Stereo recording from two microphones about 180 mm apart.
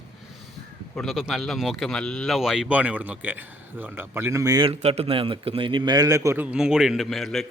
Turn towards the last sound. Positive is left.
turn(degrees=0)  # may be behind; listen again after turning